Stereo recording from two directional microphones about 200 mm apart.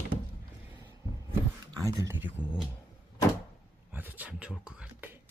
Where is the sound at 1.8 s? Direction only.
15° right (ahead or behind).